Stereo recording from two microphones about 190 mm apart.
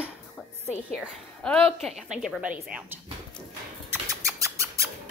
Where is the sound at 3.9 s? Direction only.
15° right (ahead or behind).